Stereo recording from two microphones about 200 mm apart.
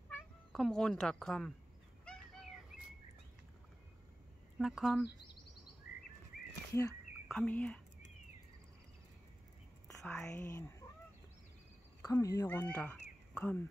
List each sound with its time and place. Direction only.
0.1 s speech: centre (ahead or behind)
4.6 s speech: centre (ahead or behind)
6.7 s speech: 15° left (ahead or behind)
10.0 s speech: 10° left (ahead or behind)
12.0 s speech: 15° left (ahead or behind)